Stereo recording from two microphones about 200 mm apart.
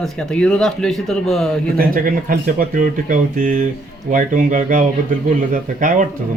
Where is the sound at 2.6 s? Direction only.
40° right (ahead or behind).